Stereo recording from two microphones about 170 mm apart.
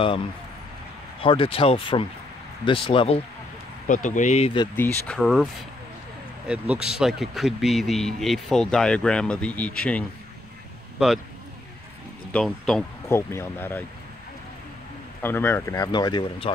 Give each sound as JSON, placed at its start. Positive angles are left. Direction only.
{"t": 1.2, "sound": "speech", "side_deg": 30}
{"t": 3.8, "sound": "speech", "side_deg": 50}
{"t": 4.7, "sound": "speech", "side_deg": 10}
{"t": 11.0, "sound": "speech", "side_deg": -5}
{"t": 12.3, "sound": "speech", "side_deg": 5}
{"t": 13.1, "sound": "speech", "side_deg": 15}
{"t": 15.2, "sound": "speech", "side_deg": 10}